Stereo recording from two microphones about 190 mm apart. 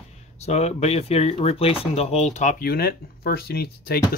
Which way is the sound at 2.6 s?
55° left (ahead or behind).